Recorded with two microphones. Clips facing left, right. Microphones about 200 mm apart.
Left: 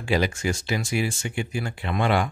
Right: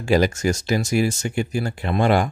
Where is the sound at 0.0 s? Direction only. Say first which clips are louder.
Right 5 dB; 45° right (ahead or behind).